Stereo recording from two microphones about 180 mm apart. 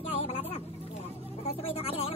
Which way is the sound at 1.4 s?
35° left (ahead or behind).